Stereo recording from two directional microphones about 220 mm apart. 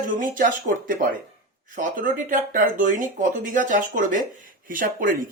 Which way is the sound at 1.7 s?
35° right (ahead or behind).